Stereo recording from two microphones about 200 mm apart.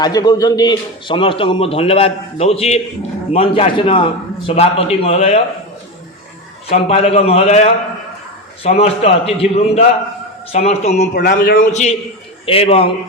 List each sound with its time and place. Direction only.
0.0 s a man's voice: 20° left (ahead or behind)
6.7 s a man's voice: 30° left (ahead or behind)
11.1 s a man's voice: 50° left (ahead or behind); by 12.9 s 30° left (ahead or behind)